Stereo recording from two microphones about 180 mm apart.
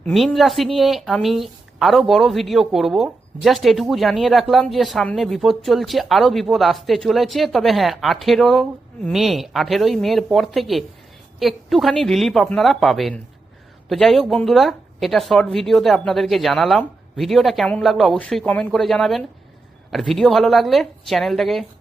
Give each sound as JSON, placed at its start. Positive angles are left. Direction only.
{"t": 0.0, "sound": "a woman's voice", "side_deg": 5}